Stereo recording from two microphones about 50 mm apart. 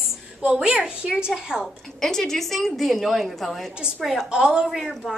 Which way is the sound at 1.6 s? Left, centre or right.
Centre.